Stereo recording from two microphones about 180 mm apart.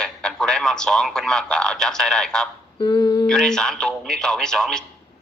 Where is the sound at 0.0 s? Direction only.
5° left (ahead or behind).